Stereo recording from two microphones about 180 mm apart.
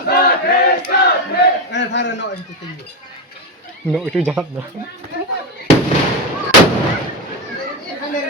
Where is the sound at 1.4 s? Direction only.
75° left (ahead or behind).